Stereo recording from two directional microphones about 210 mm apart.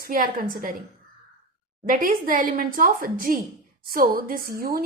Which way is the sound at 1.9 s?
40° right (ahead or behind).